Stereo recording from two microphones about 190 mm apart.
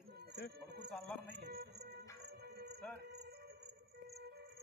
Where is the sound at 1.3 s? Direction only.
55° right (ahead or behind).